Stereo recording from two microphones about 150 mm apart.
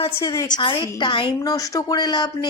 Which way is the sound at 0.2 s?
20° left (ahead or behind).